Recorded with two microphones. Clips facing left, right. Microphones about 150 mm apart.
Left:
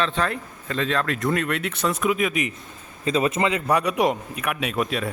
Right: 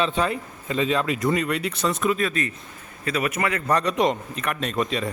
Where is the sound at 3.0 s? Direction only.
25° left (ahead or behind).